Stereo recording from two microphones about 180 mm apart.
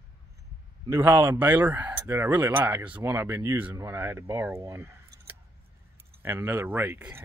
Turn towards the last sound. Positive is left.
turn(degrees=-10)  # may be behind; listen again after turning